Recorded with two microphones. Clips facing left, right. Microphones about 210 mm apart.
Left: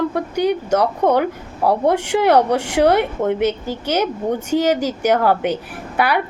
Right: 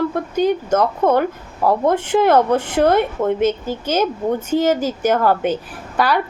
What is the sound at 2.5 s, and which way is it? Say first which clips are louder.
Speech: right 1 dB; 75° left (ahead or behind).